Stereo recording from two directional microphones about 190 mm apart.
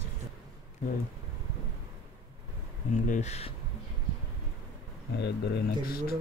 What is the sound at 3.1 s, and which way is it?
Speech, 35° left (ahead or behind).